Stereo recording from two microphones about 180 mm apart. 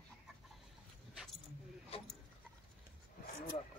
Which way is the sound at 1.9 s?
30° left (ahead or behind).